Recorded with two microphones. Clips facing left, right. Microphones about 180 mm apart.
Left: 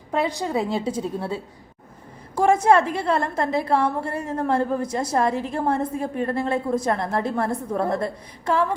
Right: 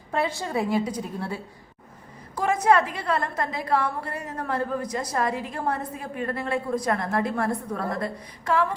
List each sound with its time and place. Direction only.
0.1 s a woman's voice: 15° left (ahead or behind)
2.3 s a sound: 25° left (ahead or behind)
2.9 s a woman's voice: 25° left (ahead or behind)
5.9 s a woman's voice: 45° left (ahead or behind)
6.2 s a woman's voice: 30° left (ahead or behind)